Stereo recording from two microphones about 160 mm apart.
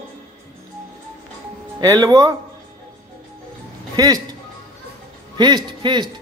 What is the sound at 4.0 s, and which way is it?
Speech, 25° right (ahead or behind).